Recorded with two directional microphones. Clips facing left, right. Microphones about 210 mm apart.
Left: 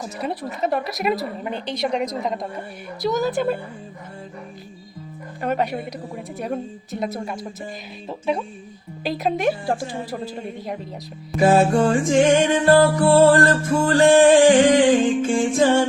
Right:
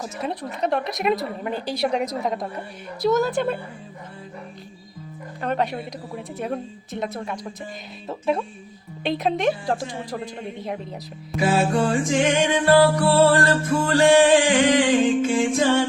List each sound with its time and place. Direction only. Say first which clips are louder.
0.0 s a woman's voice: left 1 dB; centre (ahead or behind)
5.4 s a woman's voice: left 2 dB; 5° left (ahead or behind)
11.3 s music: left 4 dB; 50° left (ahead or behind)